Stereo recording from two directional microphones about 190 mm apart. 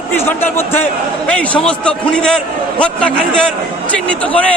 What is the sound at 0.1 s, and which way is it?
Speech, 10° left (ahead or behind).